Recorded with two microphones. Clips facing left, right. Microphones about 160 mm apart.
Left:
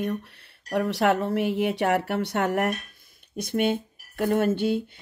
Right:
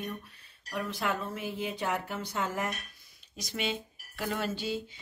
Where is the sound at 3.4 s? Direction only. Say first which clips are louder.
Left 10 dB; 55° left (ahead or behind).